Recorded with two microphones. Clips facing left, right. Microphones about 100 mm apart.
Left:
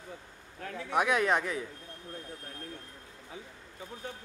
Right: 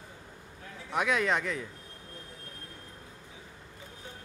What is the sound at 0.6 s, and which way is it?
Speech, 70° left (ahead or behind).